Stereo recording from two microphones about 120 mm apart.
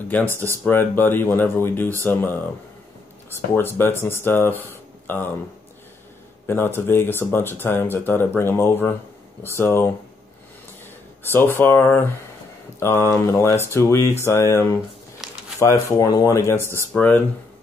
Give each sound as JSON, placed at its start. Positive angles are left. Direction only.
{"t": 0.1, "sound": "speech", "side_deg": 15}
{"t": 4.6, "sound": "a sound", "side_deg": 15}
{"t": 6.4, "sound": "speech", "side_deg": 20}
{"t": 11.3, "sound": "speech", "side_deg": 20}
{"t": 16.9, "sound": "speech", "side_deg": 15}